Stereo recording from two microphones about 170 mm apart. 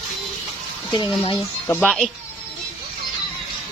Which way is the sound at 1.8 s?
Centre (ahead or behind).